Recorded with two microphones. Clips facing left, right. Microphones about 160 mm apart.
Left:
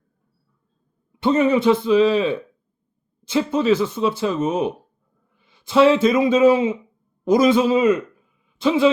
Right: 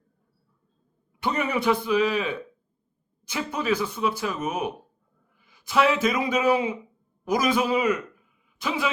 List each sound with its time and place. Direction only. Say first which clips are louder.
1.2 s a man's voice: left 9 dB; 25° left (ahead or behind)